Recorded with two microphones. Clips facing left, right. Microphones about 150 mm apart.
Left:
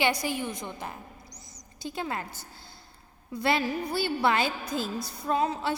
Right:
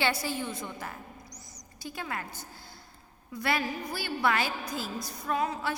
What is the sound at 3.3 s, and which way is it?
A woman's voice, 25° left (ahead or behind).